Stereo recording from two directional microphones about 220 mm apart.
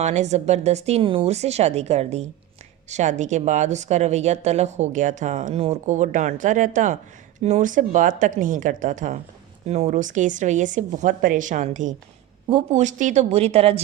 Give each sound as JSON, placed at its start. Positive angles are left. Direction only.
{"t": 0.0, "sound": "a woman's voice", "side_deg": -30}